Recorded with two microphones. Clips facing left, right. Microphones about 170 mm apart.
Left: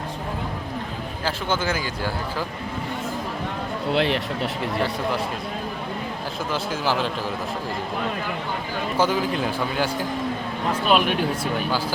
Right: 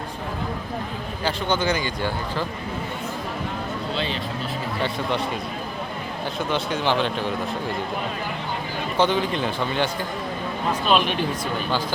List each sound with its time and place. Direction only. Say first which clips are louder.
1.2 s a man's voice: right 2 dB; 5° left (ahead or behind)
3.9 s speech: left 8 dB; 70° left (ahead or behind)
6.5 s a man's voice: right 1 dB; 5° left (ahead or behind)
9.0 s a man's voice: right 1 dB; 5° left (ahead or behind)